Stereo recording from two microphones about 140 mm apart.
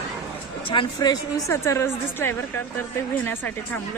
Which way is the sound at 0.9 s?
25° left (ahead or behind).